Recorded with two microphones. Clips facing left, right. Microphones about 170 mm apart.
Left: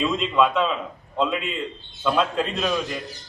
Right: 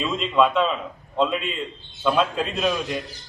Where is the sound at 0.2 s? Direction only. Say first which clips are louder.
Right 4 dB; centre (ahead or behind).